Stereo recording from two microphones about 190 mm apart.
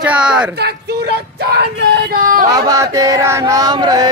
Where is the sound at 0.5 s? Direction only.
60° right (ahead or behind).